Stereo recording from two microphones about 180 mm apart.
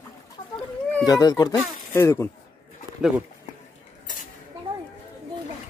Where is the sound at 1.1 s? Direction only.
20° left (ahead or behind).